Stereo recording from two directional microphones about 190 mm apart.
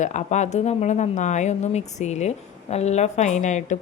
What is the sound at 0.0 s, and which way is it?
Speech, 40° left (ahead or behind).